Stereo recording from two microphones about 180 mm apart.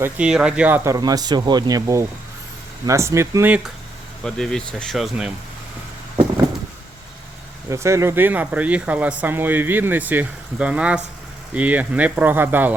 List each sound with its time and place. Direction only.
0.0 s speech: 5° right (ahead or behind)
0.9 s speech: 20° right (ahead or behind)
4.2 s speech: 5° left (ahead or behind)
7.7 s speech: 15° right (ahead or behind)